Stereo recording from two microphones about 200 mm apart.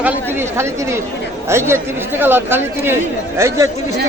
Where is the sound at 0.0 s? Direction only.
10° right (ahead or behind).